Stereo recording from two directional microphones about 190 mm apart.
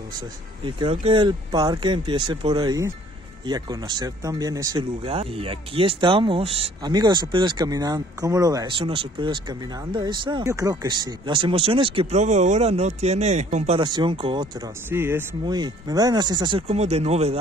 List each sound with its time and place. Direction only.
0.7 s speech: 30° right (ahead or behind)
5.0 s speech: 30° right (ahead or behind)
13.7 s speech: 25° right (ahead or behind)
14.9 s speech: 10° right (ahead or behind)
15.4 s speech: 20° right (ahead or behind)